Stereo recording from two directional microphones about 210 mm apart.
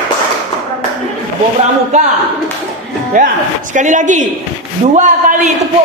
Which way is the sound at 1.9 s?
35° right (ahead or behind).